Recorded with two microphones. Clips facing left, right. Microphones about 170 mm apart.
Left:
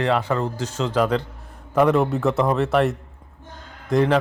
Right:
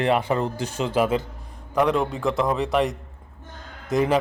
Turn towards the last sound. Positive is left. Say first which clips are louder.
# left 2 dB
turn(degrees=-5)  # may be behind; listen again after turning